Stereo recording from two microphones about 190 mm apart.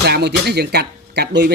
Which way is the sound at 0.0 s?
60° right (ahead or behind).